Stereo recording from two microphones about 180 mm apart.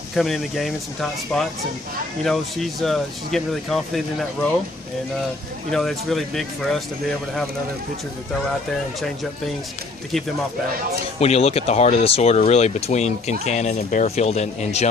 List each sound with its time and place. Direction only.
0.1 s speech: centre (ahead or behind)
2.2 s speech: centre (ahead or behind)
5.7 s speech: centre (ahead or behind)
11.1 s speech: 35° left (ahead or behind)